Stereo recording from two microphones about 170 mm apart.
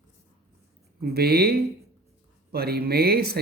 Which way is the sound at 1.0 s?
65° right (ahead or behind).